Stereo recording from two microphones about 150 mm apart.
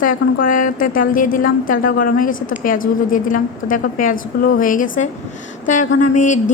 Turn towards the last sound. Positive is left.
turn(degrees=55)  # may be behind; listen again after turning